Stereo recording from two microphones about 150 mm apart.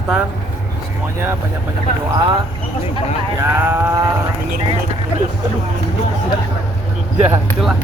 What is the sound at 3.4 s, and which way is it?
Livestock, 15° right (ahead or behind).